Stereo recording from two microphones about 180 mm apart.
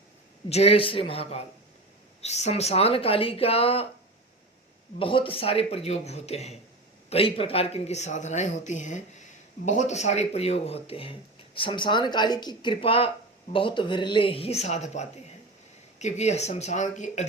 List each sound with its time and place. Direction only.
0.5 s speech: 35° left (ahead or behind)
4.9 s speech: 30° left (ahead or behind)